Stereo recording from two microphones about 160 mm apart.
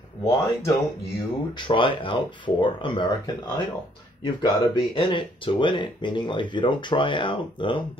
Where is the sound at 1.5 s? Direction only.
30° left (ahead or behind).